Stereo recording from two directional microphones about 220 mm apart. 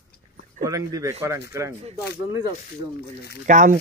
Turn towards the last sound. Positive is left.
turn(degrees=-35)  # may be behind; listen again after turning